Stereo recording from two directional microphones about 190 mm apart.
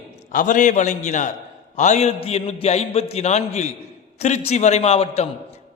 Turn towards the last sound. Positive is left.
turn(degrees=30)  # may be behind; listen again after turning